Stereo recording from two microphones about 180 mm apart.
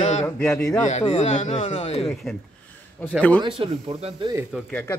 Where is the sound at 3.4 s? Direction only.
30° right (ahead or behind).